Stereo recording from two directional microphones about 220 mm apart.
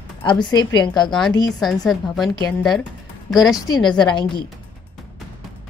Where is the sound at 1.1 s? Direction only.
Centre (ahead or behind).